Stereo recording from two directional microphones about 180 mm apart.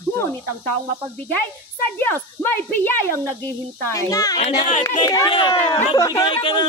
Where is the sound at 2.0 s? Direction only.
10° left (ahead or behind).